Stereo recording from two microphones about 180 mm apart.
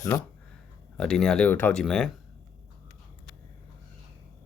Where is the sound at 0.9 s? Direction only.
5° left (ahead or behind).